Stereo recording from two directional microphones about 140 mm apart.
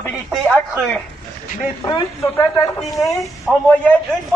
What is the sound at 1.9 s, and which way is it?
Mantra, 20° left (ahead or behind).